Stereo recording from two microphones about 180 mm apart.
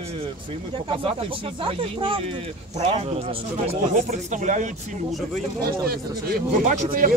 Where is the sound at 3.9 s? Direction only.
45° right (ahead or behind).